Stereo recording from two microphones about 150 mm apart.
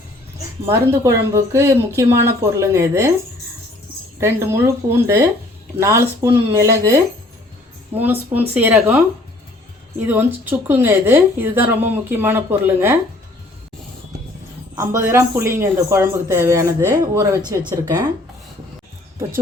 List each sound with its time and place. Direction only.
0.6 s speech: 20° right (ahead or behind)
4.2 s a woman's voice: 15° right (ahead or behind)
10.1 s a woman's voice: 10° right (ahead or behind)
14.8 s a woman's voice: 20° right (ahead or behind)